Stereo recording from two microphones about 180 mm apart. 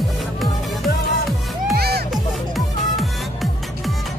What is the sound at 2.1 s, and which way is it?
Music, centre (ahead or behind).